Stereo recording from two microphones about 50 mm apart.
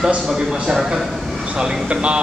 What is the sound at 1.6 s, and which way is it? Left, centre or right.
Speech, right.